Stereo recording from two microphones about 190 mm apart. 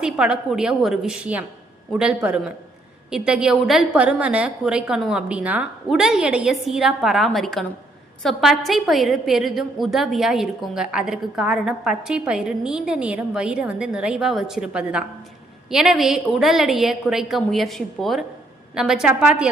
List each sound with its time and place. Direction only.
0.0 s a woman's voice: 5° right (ahead or behind)